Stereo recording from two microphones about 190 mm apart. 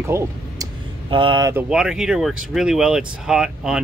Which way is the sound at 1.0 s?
25° right (ahead or behind).